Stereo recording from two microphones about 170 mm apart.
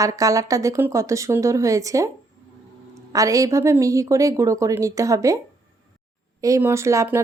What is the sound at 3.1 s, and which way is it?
A woman's voice, 20° right (ahead or behind).